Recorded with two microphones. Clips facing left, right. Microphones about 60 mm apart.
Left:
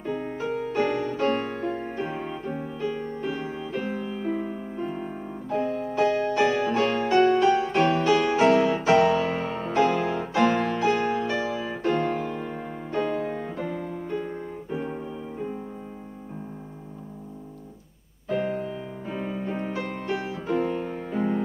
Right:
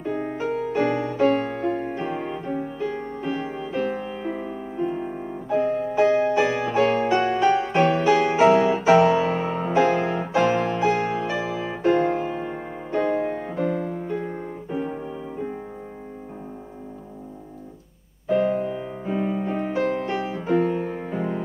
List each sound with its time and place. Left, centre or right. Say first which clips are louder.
0.0 s music: right 3 dB; centre
2.1 s music: right 4 dB; right
3.3 s music: right 4 dB; right; by 5.1 s centre
5.1 s piano: right 4 dB; right
5.5 s music: right 5 dB; centre
14.7 s keyboard: right 3 dB; centre
18.2 s music: right 6 dB; centre